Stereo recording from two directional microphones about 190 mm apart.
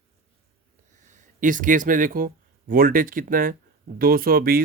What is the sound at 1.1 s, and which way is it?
Speech, 45° right (ahead or behind).